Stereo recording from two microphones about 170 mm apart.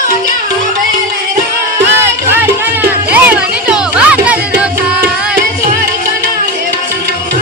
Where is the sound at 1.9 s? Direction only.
15° right (ahead or behind).